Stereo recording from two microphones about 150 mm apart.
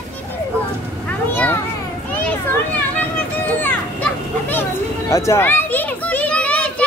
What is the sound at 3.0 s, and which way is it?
Children playing, 10° left (ahead or behind).